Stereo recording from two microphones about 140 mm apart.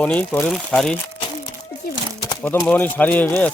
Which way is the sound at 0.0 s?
10° left (ahead or behind).